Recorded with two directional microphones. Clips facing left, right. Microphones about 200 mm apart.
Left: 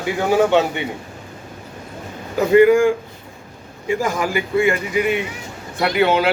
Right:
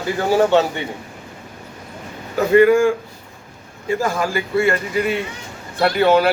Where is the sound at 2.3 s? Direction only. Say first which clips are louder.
Left 1 dB; 15° left (ahead or behind).